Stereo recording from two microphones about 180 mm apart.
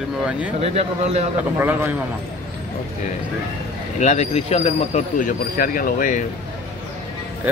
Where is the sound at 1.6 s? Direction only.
10° right (ahead or behind).